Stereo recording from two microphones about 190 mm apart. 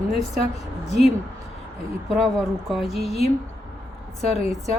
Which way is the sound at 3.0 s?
35° left (ahead or behind).